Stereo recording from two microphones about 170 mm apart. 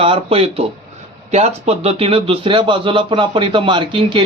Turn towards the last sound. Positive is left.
turn(degrees=-30)  # may be behind; listen again after turning